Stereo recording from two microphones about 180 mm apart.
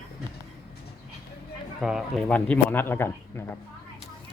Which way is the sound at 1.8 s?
Centre (ahead or behind).